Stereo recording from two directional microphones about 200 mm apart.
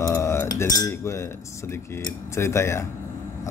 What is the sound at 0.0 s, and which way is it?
Cutlery, 15° left (ahead or behind).